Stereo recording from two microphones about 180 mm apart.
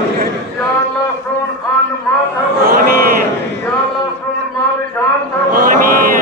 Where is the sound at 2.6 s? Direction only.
55° right (ahead or behind).